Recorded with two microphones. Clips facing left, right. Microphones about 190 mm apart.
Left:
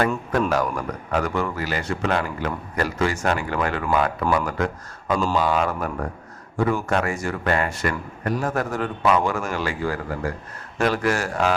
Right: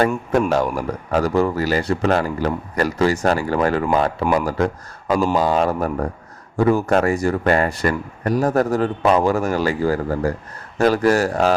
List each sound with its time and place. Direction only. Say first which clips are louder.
0.5 s speech: right 4 dB; 30° right (ahead or behind)